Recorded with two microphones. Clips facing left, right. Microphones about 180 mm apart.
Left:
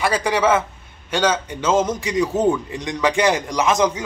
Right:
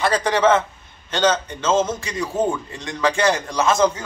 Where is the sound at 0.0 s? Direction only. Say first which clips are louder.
Right 1 dB; 10° left (ahead or behind).